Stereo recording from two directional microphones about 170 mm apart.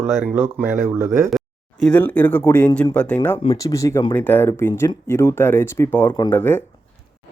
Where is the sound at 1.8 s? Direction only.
10° left (ahead or behind).